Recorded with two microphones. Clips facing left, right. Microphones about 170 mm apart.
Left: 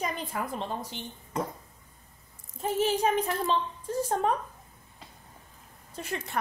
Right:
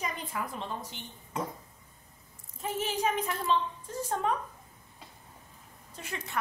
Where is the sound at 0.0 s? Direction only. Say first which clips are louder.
Left 3 dB; 40° left (ahead or behind).